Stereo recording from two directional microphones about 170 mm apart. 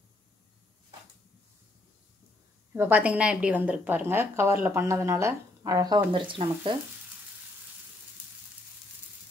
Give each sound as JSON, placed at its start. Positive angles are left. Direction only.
{"t": 2.7, "sound": "a woman's voice", "side_deg": -10}